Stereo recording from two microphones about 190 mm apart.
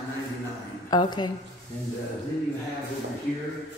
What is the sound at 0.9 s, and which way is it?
Speech, 20° left (ahead or behind).